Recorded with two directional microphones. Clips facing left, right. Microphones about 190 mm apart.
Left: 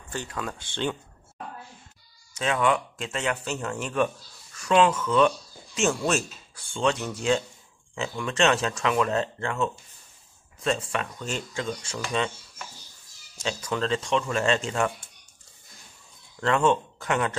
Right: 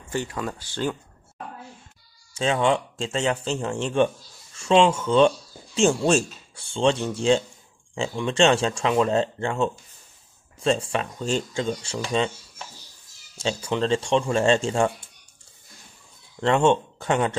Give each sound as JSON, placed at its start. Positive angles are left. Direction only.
{"t": 0.3, "sound": "speech", "side_deg": -5}
{"t": 2.3, "sound": "speech", "side_deg": -30}
{"t": 16.3, "sound": "speech", "side_deg": -30}